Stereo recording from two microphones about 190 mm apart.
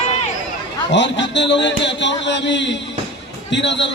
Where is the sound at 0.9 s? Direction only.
70° left (ahead or behind).